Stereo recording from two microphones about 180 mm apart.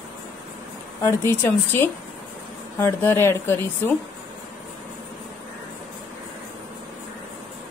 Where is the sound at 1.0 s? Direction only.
15° left (ahead or behind).